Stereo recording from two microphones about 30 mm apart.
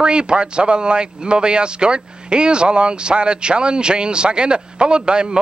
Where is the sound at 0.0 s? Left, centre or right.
Right.